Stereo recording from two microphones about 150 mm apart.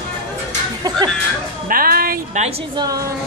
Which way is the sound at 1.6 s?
75° right (ahead or behind).